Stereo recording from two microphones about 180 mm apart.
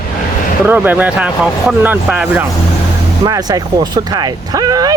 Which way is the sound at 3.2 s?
20° right (ahead or behind).